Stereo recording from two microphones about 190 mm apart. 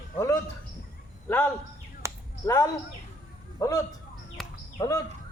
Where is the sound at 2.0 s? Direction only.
15° right (ahead or behind).